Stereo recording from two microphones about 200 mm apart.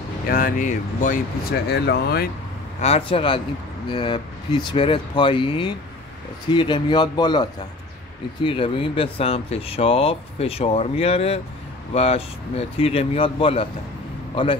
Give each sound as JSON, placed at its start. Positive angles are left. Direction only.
{"t": 0.3, "sound": "speech", "side_deg": 40}
{"t": 1.7, "sound": "speech", "side_deg": 55}
{"t": 2.8, "sound": "speech", "side_deg": 30}
{"t": 8.5, "sound": "a man's voice", "side_deg": 25}